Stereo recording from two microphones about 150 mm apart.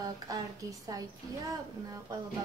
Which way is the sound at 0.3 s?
25° right (ahead or behind).